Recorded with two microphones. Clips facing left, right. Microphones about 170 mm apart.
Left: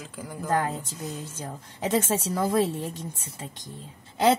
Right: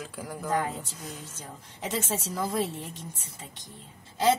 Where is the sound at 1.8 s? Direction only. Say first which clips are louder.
Left 7 dB; 60° left (ahead or behind).